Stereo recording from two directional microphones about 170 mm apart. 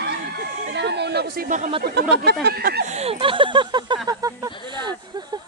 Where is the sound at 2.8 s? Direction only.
40° right (ahead or behind).